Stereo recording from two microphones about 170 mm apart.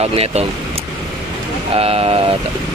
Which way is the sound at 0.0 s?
35° right (ahead or behind).